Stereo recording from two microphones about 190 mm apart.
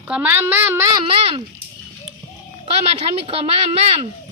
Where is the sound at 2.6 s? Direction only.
30° right (ahead or behind).